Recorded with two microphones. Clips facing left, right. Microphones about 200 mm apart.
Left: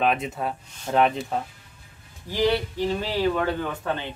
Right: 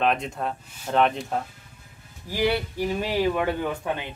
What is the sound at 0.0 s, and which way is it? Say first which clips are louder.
Speech: even; 5° left (ahead or behind).